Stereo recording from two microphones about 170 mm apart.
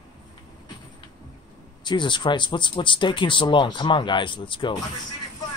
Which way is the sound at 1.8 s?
25° left (ahead or behind).